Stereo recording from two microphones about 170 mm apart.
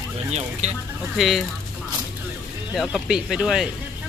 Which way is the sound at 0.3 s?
40° right (ahead or behind).